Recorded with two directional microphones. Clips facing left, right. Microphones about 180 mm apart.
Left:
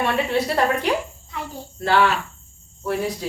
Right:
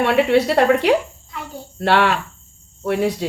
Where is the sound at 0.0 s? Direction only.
70° right (ahead or behind).